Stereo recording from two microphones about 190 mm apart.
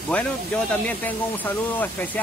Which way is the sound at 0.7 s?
10° left (ahead or behind).